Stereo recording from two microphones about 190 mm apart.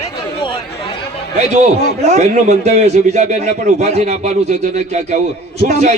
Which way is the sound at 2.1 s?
35° right (ahead or behind).